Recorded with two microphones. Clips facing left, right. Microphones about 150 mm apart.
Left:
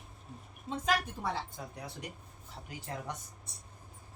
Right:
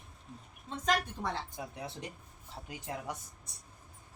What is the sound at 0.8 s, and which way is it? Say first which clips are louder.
Speech: right 1 dB; 5° left (ahead or behind).